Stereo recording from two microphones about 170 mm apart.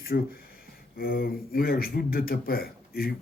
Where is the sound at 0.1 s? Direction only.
70° left (ahead or behind).